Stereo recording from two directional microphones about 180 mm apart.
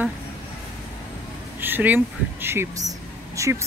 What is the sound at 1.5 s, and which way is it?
Speech, 10° right (ahead or behind).